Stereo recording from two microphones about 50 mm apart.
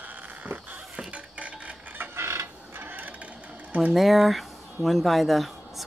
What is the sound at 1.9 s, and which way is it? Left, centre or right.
Mechanisms, right.